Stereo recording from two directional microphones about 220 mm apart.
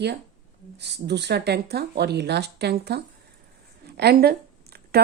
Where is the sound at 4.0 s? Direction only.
45° right (ahead or behind).